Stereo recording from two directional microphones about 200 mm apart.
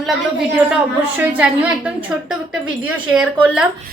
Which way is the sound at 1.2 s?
10° right (ahead or behind).